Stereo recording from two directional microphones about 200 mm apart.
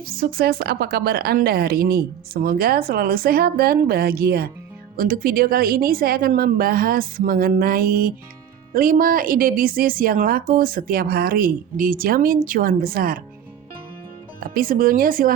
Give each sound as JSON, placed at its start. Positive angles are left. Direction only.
{"t": 0.0, "sound": "a woman's voice", "side_deg": -45}
{"t": 14.4, "sound": "a woman's voice", "side_deg": -45}